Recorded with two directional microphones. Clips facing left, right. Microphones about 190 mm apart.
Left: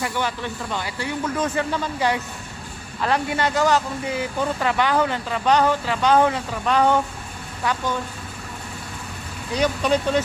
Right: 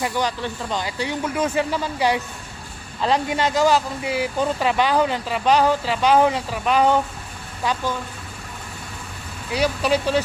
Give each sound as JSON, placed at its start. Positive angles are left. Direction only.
{"t": 0.0, "sound": "speech", "side_deg": -15}
{"t": 9.5, "sound": "speech", "side_deg": -10}